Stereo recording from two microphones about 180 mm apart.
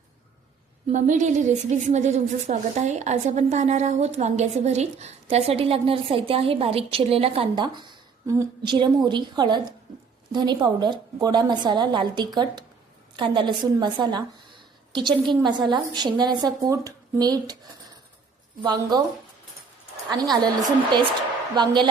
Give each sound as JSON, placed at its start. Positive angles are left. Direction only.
{"t": 0.9, "sound": "a woman's voice", "side_deg": -45}
{"t": 18.6, "sound": "a woman's voice", "side_deg": -25}
{"t": 20.3, "sound": "a woman's voice", "side_deg": -20}